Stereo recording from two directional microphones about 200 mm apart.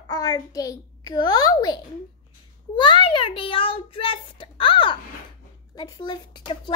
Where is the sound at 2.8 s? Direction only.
25° left (ahead or behind).